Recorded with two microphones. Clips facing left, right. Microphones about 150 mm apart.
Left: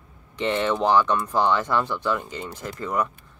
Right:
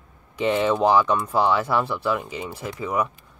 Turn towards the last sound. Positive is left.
turn(degrees=-10)  # may be behind; listen again after turning